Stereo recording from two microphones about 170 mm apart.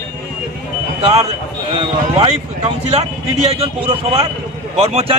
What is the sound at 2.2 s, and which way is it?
Speech, 40° right (ahead or behind).